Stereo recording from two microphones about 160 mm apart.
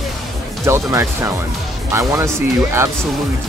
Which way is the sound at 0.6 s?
15° right (ahead or behind).